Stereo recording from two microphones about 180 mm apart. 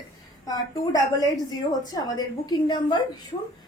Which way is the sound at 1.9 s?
20° left (ahead or behind).